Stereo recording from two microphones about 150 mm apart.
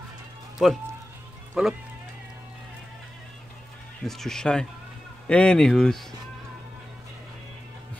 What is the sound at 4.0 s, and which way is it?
Speech, 5° left (ahead or behind).